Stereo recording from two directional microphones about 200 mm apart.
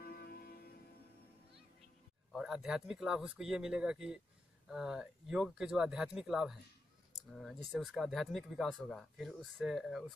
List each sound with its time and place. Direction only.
0.0 s music: 50° left (ahead or behind)
2.3 s speech: centre (ahead or behind)